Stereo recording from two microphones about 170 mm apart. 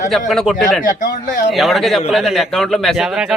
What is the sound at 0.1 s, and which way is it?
Speech, centre (ahead or behind).